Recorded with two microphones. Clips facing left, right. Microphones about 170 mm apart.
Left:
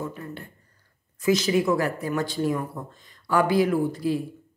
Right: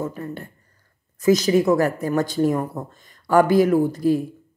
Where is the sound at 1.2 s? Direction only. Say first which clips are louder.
Right 5 dB; 40° right (ahead or behind).